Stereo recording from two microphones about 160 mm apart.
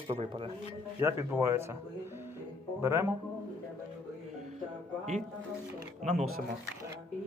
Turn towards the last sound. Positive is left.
turn(degrees=-45)  # may be behind; listen again after turning